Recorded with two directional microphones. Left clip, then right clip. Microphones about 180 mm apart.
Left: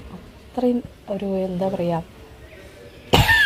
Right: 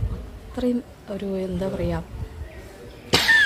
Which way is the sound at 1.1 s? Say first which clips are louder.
Left 4 dB; centre (ahead or behind).